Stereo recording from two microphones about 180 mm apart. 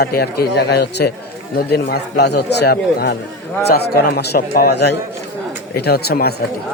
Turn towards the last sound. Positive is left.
turn(degrees=60)  # may be behind; listen again after turning